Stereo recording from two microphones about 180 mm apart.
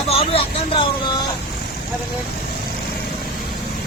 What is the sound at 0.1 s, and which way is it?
Speech, 30° left (ahead or behind).